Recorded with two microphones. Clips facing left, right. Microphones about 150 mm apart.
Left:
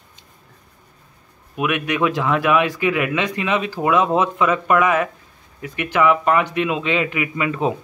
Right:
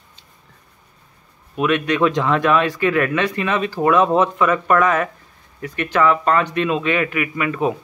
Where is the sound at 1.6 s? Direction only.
10° left (ahead or behind).